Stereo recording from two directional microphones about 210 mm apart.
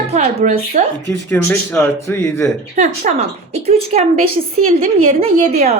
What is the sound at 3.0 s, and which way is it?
A woman's voice, 40° right (ahead or behind).